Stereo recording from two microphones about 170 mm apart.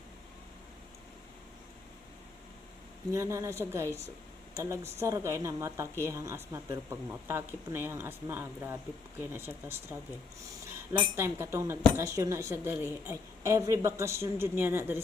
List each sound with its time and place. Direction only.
3.1 s a woman's voice: 15° right (ahead or behind)